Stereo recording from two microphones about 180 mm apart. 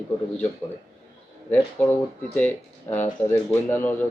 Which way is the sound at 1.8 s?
10° left (ahead or behind).